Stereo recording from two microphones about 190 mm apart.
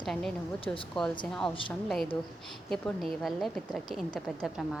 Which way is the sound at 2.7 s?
5° left (ahead or behind).